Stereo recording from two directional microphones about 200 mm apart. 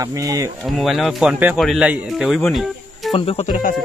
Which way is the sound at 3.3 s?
35° left (ahead or behind).